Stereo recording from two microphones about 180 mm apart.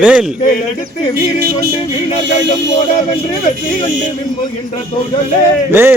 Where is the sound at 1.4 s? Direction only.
60° right (ahead or behind).